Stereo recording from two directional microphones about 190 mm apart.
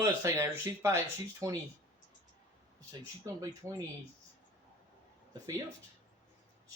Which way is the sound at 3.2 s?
15° right (ahead or behind).